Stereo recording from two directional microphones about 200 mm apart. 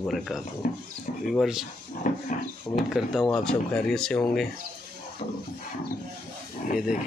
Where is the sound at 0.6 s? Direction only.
40° left (ahead or behind).